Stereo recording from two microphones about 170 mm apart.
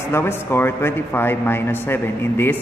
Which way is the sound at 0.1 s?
15° left (ahead or behind).